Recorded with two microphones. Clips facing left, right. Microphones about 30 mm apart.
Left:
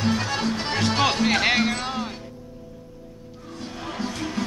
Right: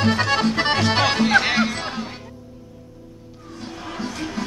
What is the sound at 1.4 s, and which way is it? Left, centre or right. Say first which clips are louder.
Music: even; centre.